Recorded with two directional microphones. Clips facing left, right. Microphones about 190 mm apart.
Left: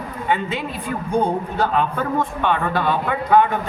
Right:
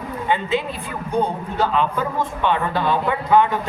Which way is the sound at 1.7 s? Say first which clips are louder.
Left 1 dB; 55° left (ahead or behind).